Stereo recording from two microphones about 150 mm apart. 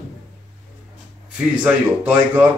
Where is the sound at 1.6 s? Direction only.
10° right (ahead or behind).